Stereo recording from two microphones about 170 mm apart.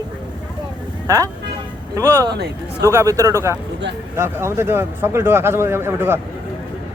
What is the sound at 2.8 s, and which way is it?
Speech, 20° right (ahead or behind).